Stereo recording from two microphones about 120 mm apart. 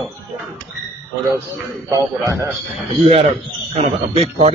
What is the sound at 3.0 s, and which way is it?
Speech, 55° right (ahead or behind).